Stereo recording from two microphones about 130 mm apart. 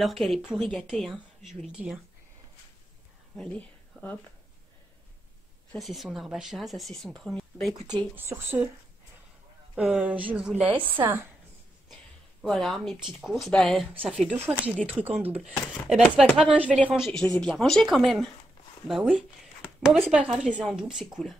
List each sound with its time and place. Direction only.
0.0 s speech: centre (ahead or behind)
3.3 s speech: 10° left (ahead or behind)
5.7 s speech: centre (ahead or behind)
8.2 s speech: 15° right (ahead or behind)
9.8 s speech: 10° right (ahead or behind)
11.0 s a woman's voice: 25° right (ahead or behind)
12.4 s speech: centre (ahead or behind)
14.2 s speech: 15° right (ahead or behind)